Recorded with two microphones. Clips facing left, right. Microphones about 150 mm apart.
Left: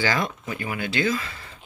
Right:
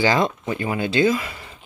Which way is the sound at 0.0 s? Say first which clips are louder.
Right 6 dB; 20° right (ahead or behind).